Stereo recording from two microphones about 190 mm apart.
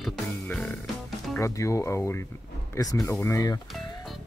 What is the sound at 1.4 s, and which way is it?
Speech, 15° left (ahead or behind).